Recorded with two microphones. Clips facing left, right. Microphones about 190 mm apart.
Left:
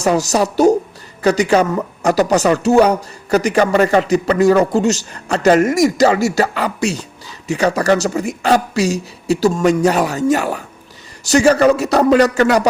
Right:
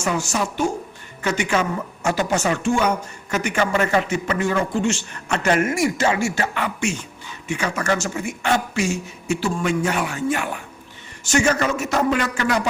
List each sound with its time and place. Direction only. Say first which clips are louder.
0.0 s a man's voice: left 8 dB; 35° left (ahead or behind)